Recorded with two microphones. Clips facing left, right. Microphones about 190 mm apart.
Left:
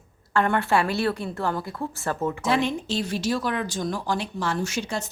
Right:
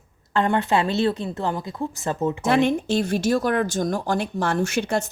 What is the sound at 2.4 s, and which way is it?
Speech, 55° right (ahead or behind).